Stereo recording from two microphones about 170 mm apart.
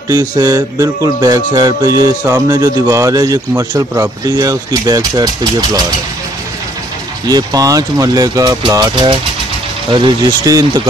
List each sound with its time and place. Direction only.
0.1 s music: 20° right (ahead or behind)
7.2 s music: 20° right (ahead or behind)